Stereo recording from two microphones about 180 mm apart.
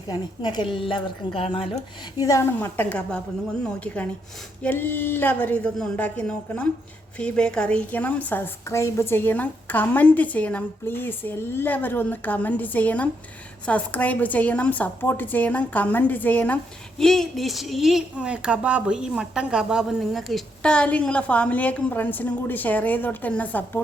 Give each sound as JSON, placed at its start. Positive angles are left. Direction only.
{"t": 0.1, "sound": "a woman's voice", "side_deg": 25}
{"t": 2.1, "sound": "a woman's voice", "side_deg": 20}